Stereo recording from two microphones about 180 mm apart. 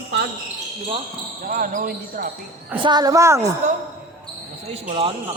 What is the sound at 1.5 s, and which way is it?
Speech, 50° right (ahead or behind).